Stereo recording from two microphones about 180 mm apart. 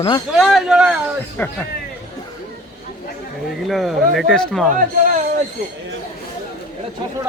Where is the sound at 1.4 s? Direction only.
10° left (ahead or behind).